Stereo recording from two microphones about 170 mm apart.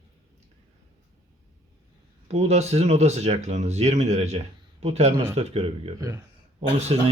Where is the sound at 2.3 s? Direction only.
40° right (ahead or behind).